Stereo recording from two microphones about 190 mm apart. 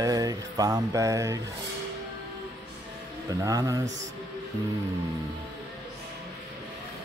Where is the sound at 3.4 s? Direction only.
20° right (ahead or behind).